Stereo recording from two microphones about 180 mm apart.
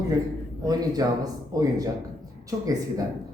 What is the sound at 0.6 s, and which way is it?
A man's voice, 20° right (ahead or behind).